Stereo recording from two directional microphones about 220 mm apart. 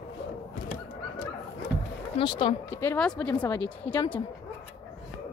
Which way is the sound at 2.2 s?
20° left (ahead or behind).